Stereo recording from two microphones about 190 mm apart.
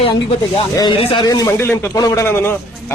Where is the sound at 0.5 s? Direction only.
25° left (ahead or behind).